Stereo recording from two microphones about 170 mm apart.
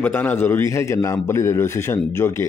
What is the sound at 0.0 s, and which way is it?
Speech, 10° left (ahead or behind).